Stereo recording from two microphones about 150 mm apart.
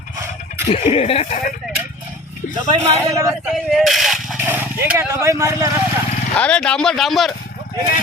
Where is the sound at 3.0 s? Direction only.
20° right (ahead or behind).